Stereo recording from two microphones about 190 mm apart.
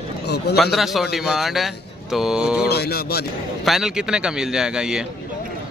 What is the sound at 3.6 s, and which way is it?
A man's voice, centre (ahead or behind).